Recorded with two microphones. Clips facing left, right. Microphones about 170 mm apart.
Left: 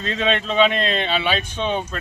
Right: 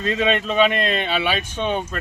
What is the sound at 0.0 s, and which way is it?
Speech, 5° right (ahead or behind).